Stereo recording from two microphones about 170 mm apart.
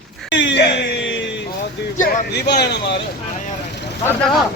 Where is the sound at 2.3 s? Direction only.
75° left (ahead or behind).